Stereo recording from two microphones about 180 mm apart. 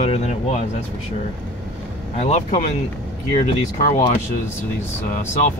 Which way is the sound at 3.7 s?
35° left (ahead or behind).